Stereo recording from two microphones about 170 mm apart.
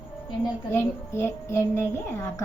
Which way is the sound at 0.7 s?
15° left (ahead or behind).